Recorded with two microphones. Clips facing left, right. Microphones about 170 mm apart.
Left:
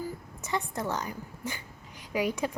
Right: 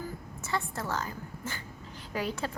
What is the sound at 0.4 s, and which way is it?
A woman's voice, 15° left (ahead or behind).